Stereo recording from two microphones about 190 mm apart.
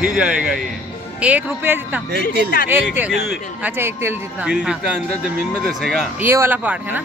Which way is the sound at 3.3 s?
10° right (ahead or behind).